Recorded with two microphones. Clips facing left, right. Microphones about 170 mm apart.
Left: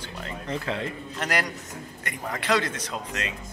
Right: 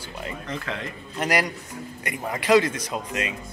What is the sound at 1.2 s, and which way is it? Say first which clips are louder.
Speech: right 5 dB; 10° right (ahead or behind).